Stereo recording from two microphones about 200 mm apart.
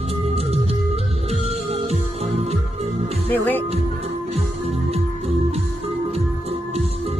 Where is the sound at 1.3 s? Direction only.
30° right (ahead or behind).